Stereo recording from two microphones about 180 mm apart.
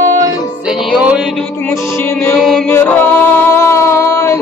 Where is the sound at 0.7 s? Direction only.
5° right (ahead or behind).